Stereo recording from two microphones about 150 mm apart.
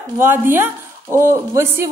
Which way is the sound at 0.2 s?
15° right (ahead or behind).